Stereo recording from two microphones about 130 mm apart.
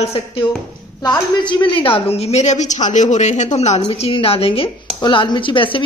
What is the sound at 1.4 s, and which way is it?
Speech, 35° left (ahead or behind).